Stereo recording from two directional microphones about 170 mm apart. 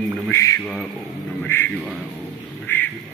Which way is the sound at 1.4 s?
10° left (ahead or behind).